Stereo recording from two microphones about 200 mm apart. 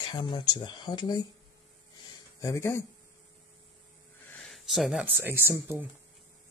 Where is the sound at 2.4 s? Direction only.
15° left (ahead or behind).